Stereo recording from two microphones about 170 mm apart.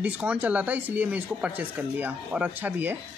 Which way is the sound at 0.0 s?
10° right (ahead or behind).